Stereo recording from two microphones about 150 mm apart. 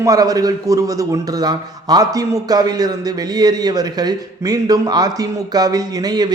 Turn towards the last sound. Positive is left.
turn(degrees=-25)  # may be behind; listen again after turning